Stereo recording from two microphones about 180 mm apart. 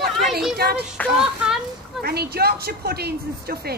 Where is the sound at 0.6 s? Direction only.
60° right (ahead or behind).